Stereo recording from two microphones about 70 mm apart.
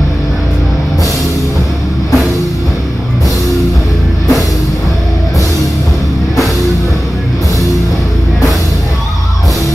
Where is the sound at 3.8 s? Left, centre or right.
Left.